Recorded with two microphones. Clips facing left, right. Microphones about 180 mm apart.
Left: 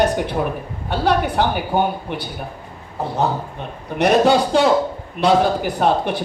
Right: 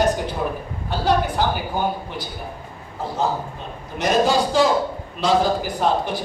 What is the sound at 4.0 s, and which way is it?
A man's voice, 65° left (ahead or behind).